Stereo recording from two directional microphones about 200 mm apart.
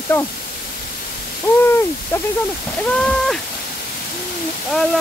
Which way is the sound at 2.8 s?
5° left (ahead or behind).